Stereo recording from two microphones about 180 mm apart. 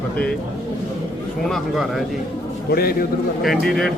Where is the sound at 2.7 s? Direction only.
55° left (ahead or behind).